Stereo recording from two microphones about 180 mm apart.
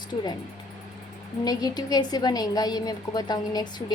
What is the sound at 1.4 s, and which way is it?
A woman's voice, 20° left (ahead or behind).